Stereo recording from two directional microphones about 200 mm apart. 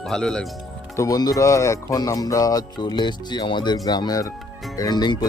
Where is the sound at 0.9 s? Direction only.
15° left (ahead or behind).